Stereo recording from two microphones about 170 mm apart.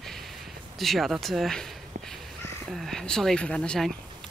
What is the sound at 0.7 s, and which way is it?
Speech, centre (ahead or behind).